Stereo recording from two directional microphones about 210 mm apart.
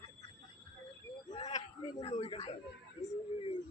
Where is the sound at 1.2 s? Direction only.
25° left (ahead or behind).